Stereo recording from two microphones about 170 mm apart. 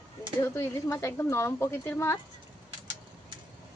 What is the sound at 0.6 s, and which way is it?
Speech, 15° left (ahead or behind).